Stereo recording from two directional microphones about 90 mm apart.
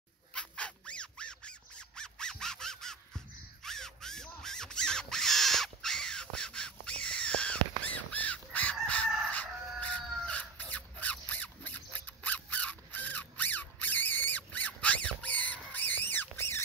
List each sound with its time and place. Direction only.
0.3 s squeak: 10° left (ahead or behind)
3.6 s crow: 5° left (ahead or behind)
8.8 s crowing: 15° left (ahead or behind)
9.3 s chicken: 15° left (ahead or behind)
15.7 s a sound: 20° left (ahead or behind)